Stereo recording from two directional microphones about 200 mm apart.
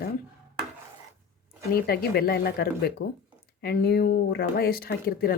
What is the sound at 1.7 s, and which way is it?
A woman's voice, 50° left (ahead or behind).